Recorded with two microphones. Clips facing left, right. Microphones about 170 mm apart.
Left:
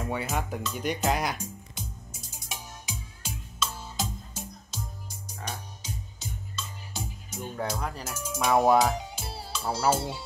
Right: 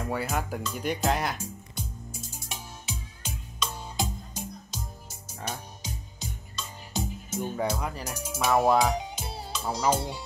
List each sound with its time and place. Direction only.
0.0 s speech: centre (ahead or behind)
2.4 s music: 5° left (ahead or behind)
5.4 s music: 15° right (ahead or behind)
7.5 s speech: 10° right (ahead or behind)